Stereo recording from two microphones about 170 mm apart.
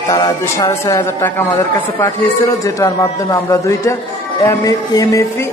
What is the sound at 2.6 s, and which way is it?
A man's voice, 20° left (ahead or behind).